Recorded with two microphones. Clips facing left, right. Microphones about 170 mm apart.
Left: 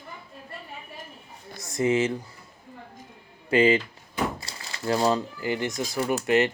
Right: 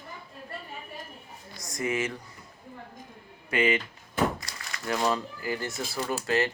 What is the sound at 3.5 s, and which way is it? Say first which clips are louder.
Speech: left 6 dB; 30° left (ahead or behind).